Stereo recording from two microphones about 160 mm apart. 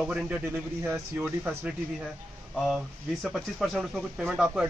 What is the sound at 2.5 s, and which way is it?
Speech, centre (ahead or behind).